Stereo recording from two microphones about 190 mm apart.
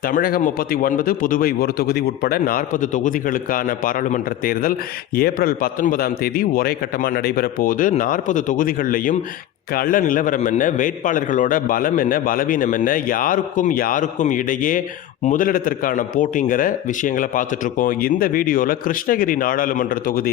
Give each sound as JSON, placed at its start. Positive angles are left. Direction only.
{"t": 0.1, "sound": "a man's voice", "side_deg": 50}